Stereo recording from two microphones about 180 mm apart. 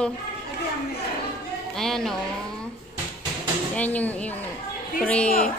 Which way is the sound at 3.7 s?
10° left (ahead or behind).